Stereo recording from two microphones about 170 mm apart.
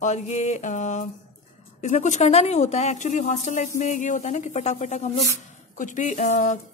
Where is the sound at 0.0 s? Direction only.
40° left (ahead or behind).